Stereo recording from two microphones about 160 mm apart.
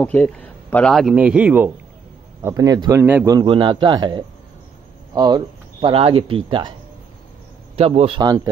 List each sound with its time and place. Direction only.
0.0 s a man's voice: 10° left (ahead or behind); by 1.7 s 10° right (ahead or behind)
2.4 s speech: 20° right (ahead or behind)
3.3 s speech: 30° right (ahead or behind)
7.7 s a man's voice: 40° right (ahead or behind)